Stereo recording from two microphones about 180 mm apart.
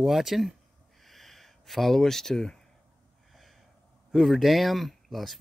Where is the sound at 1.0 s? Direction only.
Centre (ahead or behind).